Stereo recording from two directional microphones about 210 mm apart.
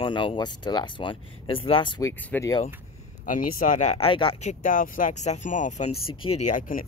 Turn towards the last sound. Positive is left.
turn(degrees=40)  # may be behind; listen again after turning